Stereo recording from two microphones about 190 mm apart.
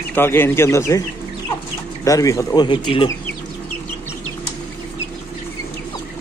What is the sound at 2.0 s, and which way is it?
Speech, 15° left (ahead or behind).